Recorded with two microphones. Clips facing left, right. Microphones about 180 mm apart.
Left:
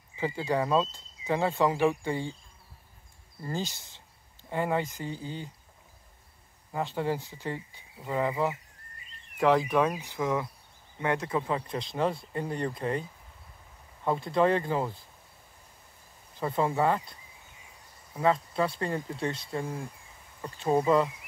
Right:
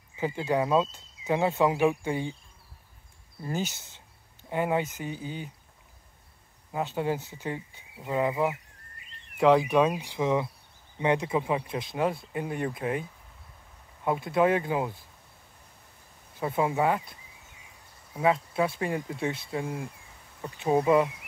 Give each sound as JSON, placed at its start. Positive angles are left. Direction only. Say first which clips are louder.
{"t": 0.2, "sound": "speech", "louder": "right 2 dB", "side_deg": -15}
{"t": 3.4, "sound": "speech", "louder": "right 2 dB", "side_deg": -20}
{"t": 6.7, "sound": "speech", "louder": "right 1 dB", "side_deg": -10}
{"t": 14.0, "sound": "speech", "louder": "right 1 dB", "side_deg": -5}
{"t": 16.3, "sound": "speech", "louder": "right 1 dB", "side_deg": -10}
{"t": 18.1, "sound": "speech", "louder": "right 1 dB", "side_deg": -10}